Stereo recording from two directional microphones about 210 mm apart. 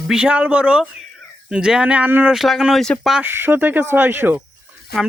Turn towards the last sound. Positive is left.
turn(degrees=50)  # may be behind; listen again after turning